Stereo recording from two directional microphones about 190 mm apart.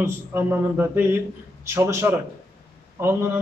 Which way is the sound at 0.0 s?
10° right (ahead or behind).